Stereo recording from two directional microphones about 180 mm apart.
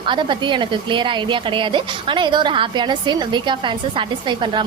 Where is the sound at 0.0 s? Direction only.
25° right (ahead or behind).